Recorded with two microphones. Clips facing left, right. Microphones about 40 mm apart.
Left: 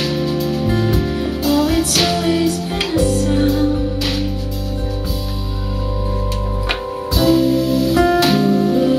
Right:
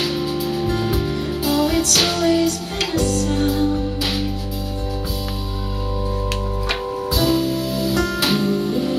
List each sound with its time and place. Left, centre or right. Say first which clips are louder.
0.7 s music: left 3 dB; centre
2.1 s music: left 1 dB; centre
3.4 s music: left 3 dB; centre
7.2 s music: left 6 dB; centre
7.9 s music: left 9 dB; centre
8.2 s music: left 5 dB; centre